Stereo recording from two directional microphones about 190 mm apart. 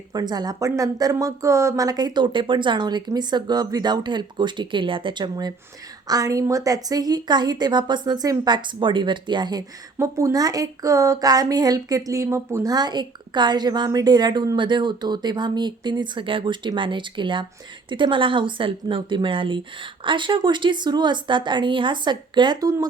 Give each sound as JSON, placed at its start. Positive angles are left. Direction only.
{"t": 0.1, "sound": "speech", "side_deg": -20}